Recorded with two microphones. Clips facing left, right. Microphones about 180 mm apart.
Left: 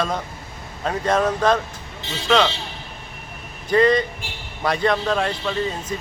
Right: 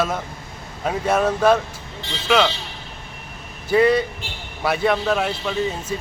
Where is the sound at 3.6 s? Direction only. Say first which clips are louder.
Even; 10° right (ahead or behind).